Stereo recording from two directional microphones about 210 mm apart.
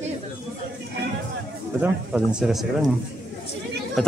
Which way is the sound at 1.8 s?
5° right (ahead or behind).